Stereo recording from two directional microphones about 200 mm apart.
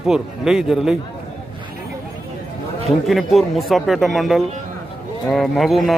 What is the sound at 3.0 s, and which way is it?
A man's voice, centre (ahead or behind).